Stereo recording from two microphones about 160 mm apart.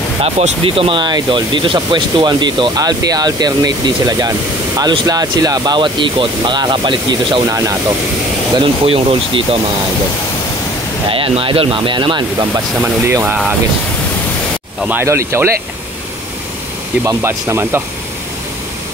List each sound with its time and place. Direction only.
0.2 s speech: 35° right (ahead or behind); by 7.7 s 20° right (ahead or behind)
8.5 s speech: 35° right (ahead or behind)
11.1 s speech: 35° right (ahead or behind)
12.8 s speech: 10° right (ahead or behind)
14.8 s speech: 10° right (ahead or behind)
17.0 s speech: 15° right (ahead or behind)